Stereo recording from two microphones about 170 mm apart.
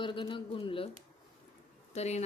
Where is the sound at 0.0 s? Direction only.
30° left (ahead or behind).